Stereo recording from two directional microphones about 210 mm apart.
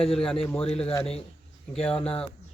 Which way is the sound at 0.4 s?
5° left (ahead or behind).